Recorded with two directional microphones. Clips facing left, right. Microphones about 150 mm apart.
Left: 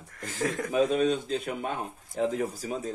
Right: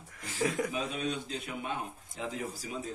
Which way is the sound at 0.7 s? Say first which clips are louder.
Left 10 dB; 50° left (ahead or behind).